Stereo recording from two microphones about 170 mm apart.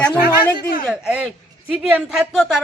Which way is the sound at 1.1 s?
5° right (ahead or behind).